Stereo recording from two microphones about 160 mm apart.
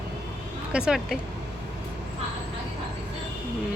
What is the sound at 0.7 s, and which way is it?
Speech, 5° right (ahead or behind).